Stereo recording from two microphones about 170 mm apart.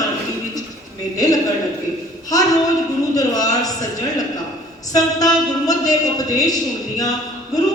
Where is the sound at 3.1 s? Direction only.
20° left (ahead or behind).